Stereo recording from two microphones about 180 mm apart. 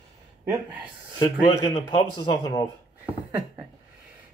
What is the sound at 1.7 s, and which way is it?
Speech, 25° left (ahead or behind).